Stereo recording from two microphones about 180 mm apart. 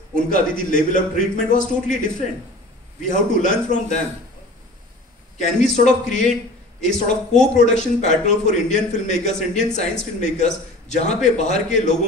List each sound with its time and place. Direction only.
0.1 s a man's voice: 45° left (ahead or behind)
3.1 s a man's voice: 45° left (ahead or behind)
5.4 s a man's voice: 40° left (ahead or behind)